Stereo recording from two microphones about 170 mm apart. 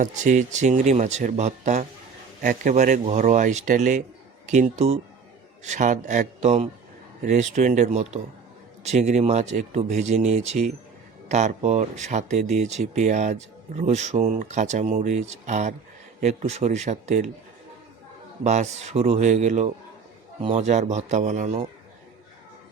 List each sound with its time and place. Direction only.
0.0 s speech: 45° right (ahead or behind)
18.4 s speech: 45° right (ahead or behind)